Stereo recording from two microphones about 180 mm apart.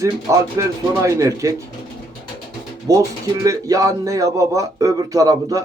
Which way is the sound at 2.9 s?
20° right (ahead or behind).